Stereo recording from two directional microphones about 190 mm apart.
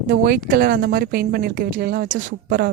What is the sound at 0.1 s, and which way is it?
Speech, 50° right (ahead or behind).